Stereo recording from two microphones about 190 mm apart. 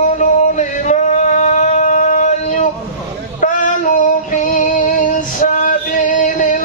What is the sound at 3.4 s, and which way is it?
Female singing, 45° left (ahead or behind).